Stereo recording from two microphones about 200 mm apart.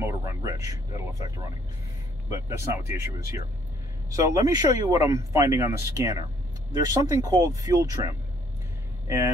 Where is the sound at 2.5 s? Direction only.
15° right (ahead or behind).